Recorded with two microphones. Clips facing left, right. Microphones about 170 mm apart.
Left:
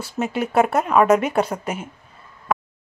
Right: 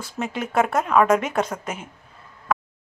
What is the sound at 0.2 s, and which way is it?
A woman's voice, 5° left (ahead or behind).